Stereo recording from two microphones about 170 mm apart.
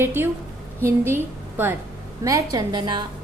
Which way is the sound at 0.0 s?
15° right (ahead or behind).